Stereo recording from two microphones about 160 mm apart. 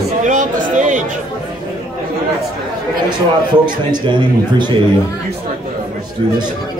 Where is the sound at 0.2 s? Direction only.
55° right (ahead or behind).